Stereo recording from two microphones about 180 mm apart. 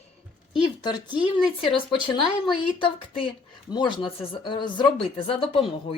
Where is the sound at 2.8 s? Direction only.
30° left (ahead or behind).